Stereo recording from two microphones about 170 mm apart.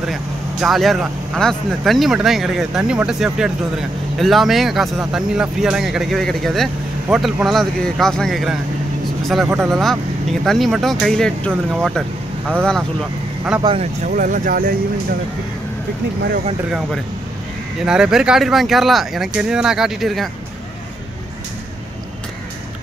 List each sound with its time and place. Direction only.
0.0 s speech: centre (ahead or behind)
13.6 s speech: 25° right (ahead or behind)
14.0 s speech: 50° right (ahead or behind)
17.8 s speech: 5° right (ahead or behind)